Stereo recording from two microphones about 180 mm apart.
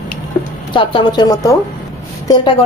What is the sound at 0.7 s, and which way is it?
A woman's voice, 25° left (ahead or behind).